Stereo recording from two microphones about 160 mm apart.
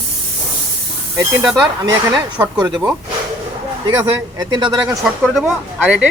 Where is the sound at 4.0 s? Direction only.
25° right (ahead or behind).